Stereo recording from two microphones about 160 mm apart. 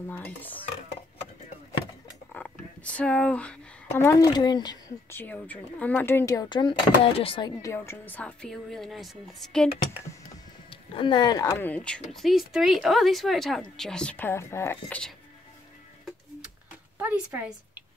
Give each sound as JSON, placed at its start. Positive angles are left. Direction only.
{"t": 0.1, "sound": "speech", "side_deg": 10}
{"t": 2.3, "sound": "speech", "side_deg": 10}
{"t": 5.1, "sound": "speech", "side_deg": 10}
{"t": 7.6, "sound": "speech", "side_deg": 15}
{"t": 10.7, "sound": "speech", "side_deg": 30}
{"t": 17.0, "sound": "speech", "side_deg": -10}